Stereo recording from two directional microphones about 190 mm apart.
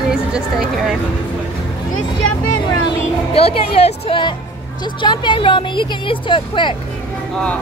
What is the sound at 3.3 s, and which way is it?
A woman's voice, 30° left (ahead or behind).